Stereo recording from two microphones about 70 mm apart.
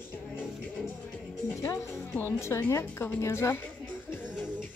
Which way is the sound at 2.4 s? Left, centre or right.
Left.